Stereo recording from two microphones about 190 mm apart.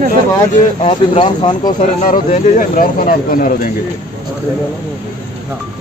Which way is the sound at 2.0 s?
40° left (ahead or behind).